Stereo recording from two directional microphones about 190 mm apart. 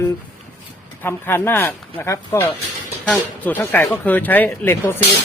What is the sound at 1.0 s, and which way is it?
Speech, 10° left (ahead or behind).